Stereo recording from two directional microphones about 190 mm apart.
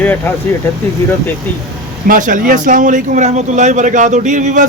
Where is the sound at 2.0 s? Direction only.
45° right (ahead or behind).